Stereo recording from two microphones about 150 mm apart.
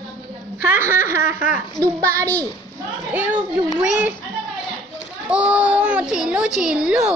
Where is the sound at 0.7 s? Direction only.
15° right (ahead or behind).